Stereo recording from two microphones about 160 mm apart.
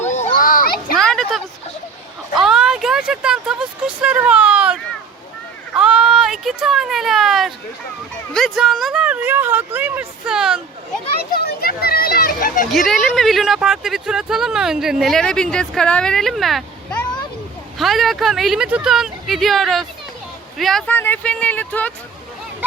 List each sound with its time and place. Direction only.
0.1 s children playing: 50° left (ahead or behind)
0.9 s a sound: centre (ahead or behind)
8.3 s speech: 5° left (ahead or behind)
11.3 s children playing: 75° left (ahead or behind)
12.7 s speech: centre (ahead or behind)